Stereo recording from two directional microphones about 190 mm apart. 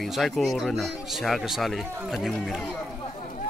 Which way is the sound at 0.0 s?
Centre (ahead or behind).